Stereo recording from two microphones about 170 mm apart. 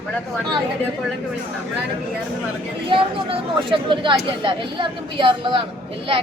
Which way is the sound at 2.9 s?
30° right (ahead or behind).